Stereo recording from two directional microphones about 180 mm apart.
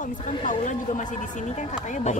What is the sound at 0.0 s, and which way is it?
Speech, 45° left (ahead or behind).